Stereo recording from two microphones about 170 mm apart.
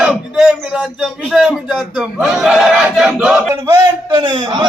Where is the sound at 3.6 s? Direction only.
20° right (ahead or behind).